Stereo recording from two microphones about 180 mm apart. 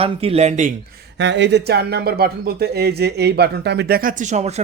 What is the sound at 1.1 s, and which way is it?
Speech, 80° right.